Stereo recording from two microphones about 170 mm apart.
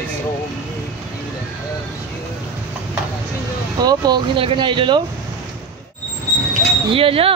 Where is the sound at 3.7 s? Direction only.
25° right (ahead or behind).